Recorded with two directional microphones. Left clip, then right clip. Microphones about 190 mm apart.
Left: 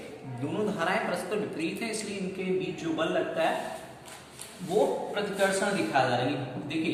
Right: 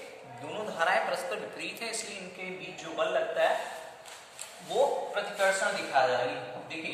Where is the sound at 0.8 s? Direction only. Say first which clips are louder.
Right 4 dB; 15° right (ahead or behind).